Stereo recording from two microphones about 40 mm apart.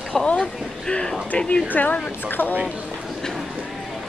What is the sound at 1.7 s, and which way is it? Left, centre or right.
Speech, left.